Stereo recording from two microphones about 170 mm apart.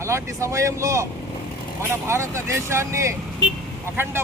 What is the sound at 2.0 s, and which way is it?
Speech, 15° right (ahead or behind).